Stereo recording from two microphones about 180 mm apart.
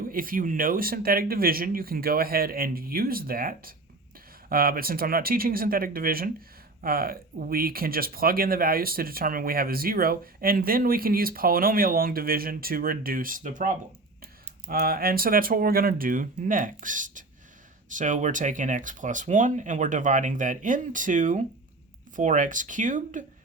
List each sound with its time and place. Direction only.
0.1 s speech: 50° right (ahead or behind)